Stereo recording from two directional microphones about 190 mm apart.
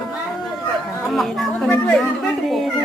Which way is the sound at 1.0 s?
Centre (ahead or behind).